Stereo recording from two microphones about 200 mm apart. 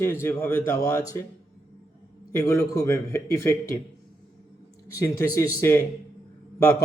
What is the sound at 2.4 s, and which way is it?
A man's voice, 15° left (ahead or behind).